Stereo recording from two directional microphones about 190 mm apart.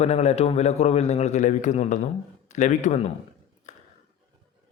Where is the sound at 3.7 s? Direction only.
40° left (ahead or behind).